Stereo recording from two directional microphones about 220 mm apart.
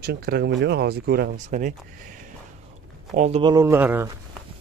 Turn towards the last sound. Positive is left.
turn(degrees=-10)  # may be behind; listen again after turning